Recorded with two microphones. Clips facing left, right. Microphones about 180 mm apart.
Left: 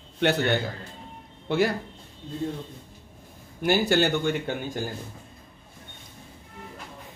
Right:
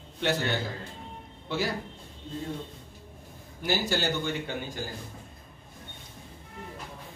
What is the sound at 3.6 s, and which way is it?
Speech, 60° left (ahead or behind).